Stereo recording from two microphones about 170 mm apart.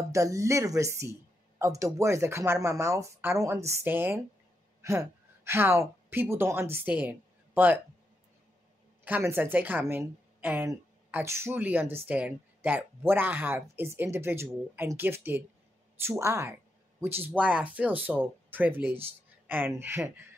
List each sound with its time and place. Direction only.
0.1 s a woman's voice: 20° right (ahead or behind)
9.0 s speech: 10° right (ahead or behind)